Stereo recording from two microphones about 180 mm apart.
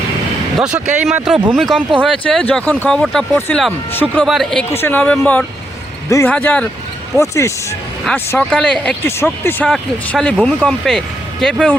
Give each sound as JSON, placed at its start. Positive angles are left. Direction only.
{"t": 0.6, "sound": "speech", "side_deg": -5}
{"t": 6.1, "sound": "speech", "side_deg": 15}
{"t": 9.6, "sound": "speech", "side_deg": 0}